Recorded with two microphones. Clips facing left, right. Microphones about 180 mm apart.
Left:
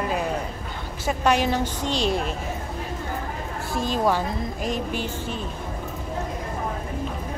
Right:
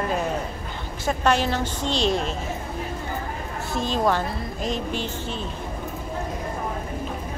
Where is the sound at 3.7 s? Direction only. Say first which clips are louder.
Even; 10° left (ahead or behind).